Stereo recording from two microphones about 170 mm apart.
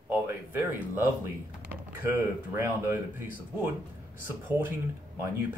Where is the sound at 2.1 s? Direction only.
10° right (ahead or behind).